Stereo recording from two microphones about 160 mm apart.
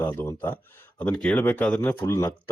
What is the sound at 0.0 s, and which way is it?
Speech, 15° left (ahead or behind).